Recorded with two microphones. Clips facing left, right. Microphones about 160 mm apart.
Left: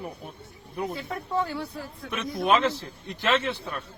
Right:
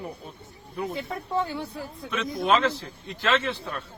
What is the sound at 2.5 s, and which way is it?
Speech, 15° left (ahead or behind).